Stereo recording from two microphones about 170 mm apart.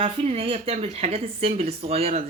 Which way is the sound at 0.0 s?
35° right (ahead or behind).